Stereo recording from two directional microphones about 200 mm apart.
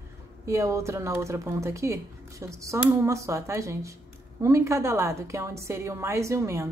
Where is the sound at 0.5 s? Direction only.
15° right (ahead or behind).